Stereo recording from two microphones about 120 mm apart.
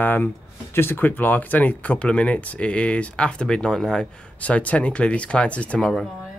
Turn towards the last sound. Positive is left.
turn(degrees=5)  # may be behind; listen again after turning